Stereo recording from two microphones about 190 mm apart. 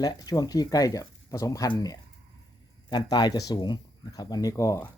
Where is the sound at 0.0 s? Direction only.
20° left (ahead or behind).